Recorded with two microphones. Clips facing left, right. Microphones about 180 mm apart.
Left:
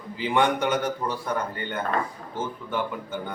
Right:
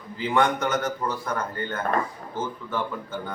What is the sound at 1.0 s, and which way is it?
Speech, 15° left (ahead or behind).